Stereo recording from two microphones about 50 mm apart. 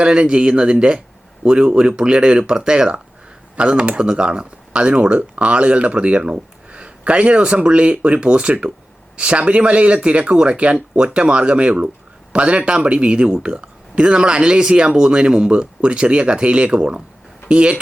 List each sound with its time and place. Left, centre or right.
0.0 s speech: centre